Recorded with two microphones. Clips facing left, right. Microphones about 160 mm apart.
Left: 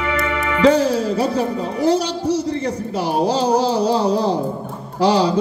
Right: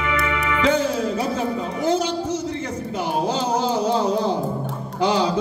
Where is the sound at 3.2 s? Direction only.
35° left (ahead or behind).